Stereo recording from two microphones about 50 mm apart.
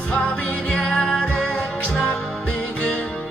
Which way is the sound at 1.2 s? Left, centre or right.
Centre.